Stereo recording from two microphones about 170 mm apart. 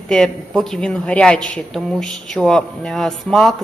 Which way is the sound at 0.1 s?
5° left (ahead or behind).